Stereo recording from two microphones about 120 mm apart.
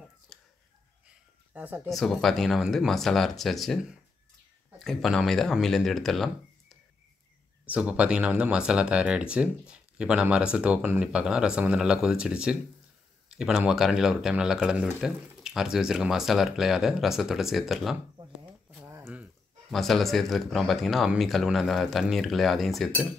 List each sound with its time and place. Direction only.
0.3 s a sound: centre (ahead or behind)
1.5 s speech: 15° right (ahead or behind)
1.9 s speech: centre (ahead or behind)
7.6 s speech: 10° right (ahead or behind)
18.4 s a sound: 15° right (ahead or behind)
19.7 s speech: centre (ahead or behind)